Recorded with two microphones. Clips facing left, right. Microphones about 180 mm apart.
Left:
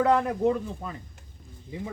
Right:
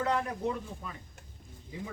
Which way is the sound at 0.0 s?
55° left (ahead or behind).